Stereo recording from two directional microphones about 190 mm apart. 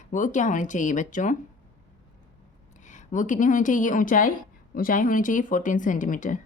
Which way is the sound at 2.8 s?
40° left (ahead or behind).